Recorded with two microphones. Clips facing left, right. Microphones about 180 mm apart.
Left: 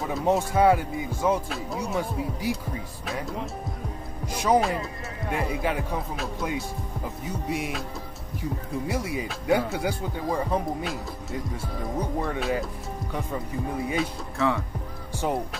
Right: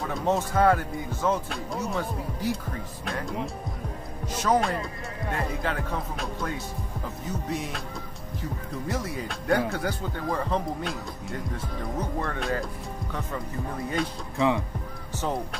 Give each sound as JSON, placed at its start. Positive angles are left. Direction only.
{"t": 0.0, "sound": "speech", "side_deg": 5}
{"t": 14.4, "sound": "speech", "side_deg": -15}